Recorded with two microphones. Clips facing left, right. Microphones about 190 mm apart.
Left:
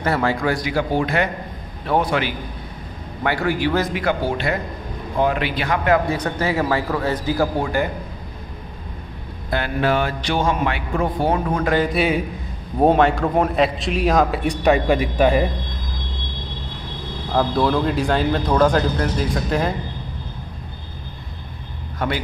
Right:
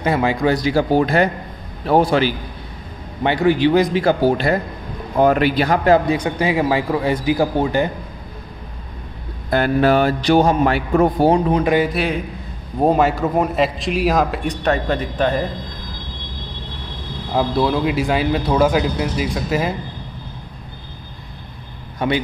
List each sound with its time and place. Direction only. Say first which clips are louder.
0.0 s speech: right 3 dB; 15° right (ahead or behind)
0.7 s a man's voice: right 5 dB; 35° right (ahead or behind)
3.3 s a man's voice: right 5 dB; 20° right (ahead or behind)
3.9 s a man's voice: right 6 dB; 35° right (ahead or behind)
6.0 s speech: right 3 dB; 10° right (ahead or behind)
9.5 s a man's voice: right 5 dB; 40° right (ahead or behind)
11.3 s speech: right 4 dB; 15° right (ahead or behind)
11.9 s a man's voice: left 2 dB; centre (ahead or behind)
17.3 s speech: right 1 dB; 10° right (ahead or behind)